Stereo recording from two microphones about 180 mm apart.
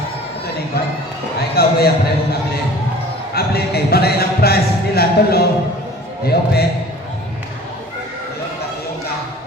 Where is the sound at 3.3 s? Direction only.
60° left (ahead or behind).